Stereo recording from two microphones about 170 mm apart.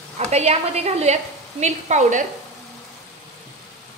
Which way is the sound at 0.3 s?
40° right (ahead or behind).